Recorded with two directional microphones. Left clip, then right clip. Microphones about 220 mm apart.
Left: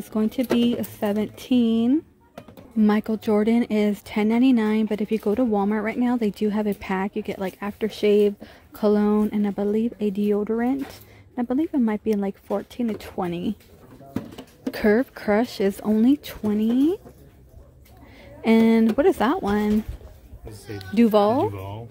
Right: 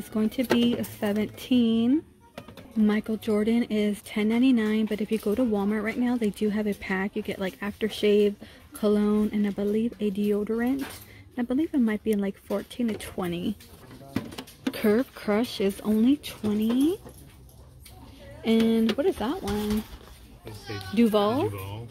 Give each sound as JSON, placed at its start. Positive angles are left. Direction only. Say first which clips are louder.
{"t": 0.1, "sound": "speech", "louder": "left 2 dB", "side_deg": 10}
{"t": 14.7, "sound": "speech", "louder": "left 4 dB", "side_deg": 10}
{"t": 18.4, "sound": "speech", "louder": "left 5 dB", "side_deg": 20}
{"t": 20.9, "sound": "speech", "louder": "left 5 dB", "side_deg": 15}